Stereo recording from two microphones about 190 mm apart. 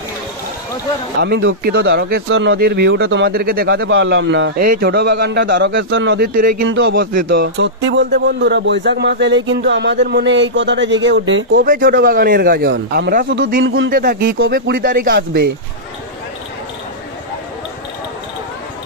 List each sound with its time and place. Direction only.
1.2 s speech: 70° right (ahead or behind)
2.2 s speech: 90° right
2.6 s a man's voice: 60° right (ahead or behind); by 3.3 s 75° right (ahead or behind)
3.3 s speech: 50° right (ahead or behind); by 4.5 s 75° right (ahead or behind)
4.6 s a man's voice: 55° right (ahead or behind)
6.6 s speech: 75° right (ahead or behind)
11.8 s a man's voice: 50° right (ahead or behind)